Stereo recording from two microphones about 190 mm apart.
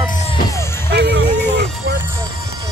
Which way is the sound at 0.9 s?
65° right (ahead or behind).